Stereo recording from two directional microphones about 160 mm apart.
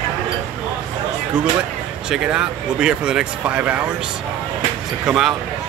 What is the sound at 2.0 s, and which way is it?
Speech, 5° right (ahead or behind).